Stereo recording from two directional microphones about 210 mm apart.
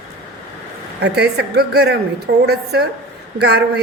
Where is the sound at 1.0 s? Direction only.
50° right (ahead or behind).